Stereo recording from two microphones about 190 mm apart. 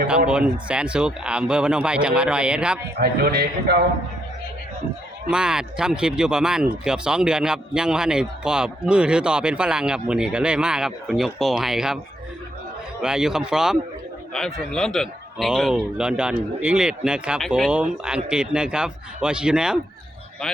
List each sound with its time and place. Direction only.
0.3 s speech: 5° right (ahead or behind)
3.0 s a man's voice: 55° right (ahead or behind)
5.3 s speech: 5° right (ahead or behind)
13.0 s speech: 5° right (ahead or behind)